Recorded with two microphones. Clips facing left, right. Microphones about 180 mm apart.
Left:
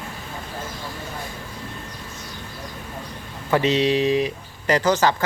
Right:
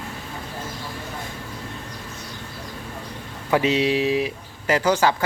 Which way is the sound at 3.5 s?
10° right (ahead or behind).